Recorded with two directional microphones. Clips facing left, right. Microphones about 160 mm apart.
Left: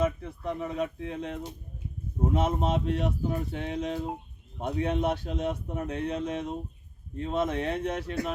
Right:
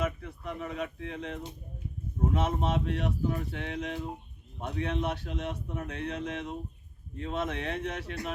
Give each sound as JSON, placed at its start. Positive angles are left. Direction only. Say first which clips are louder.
{"t": 0.0, "sound": "speech", "louder": "left 5 dB", "side_deg": 30}
{"t": 2.3, "sound": "speech", "louder": "left 3 dB", "side_deg": 35}
{"t": 4.9, "sound": "speech", "louder": "left 4 dB", "side_deg": 40}